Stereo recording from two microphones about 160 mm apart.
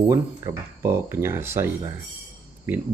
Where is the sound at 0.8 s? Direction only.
15° right (ahead or behind).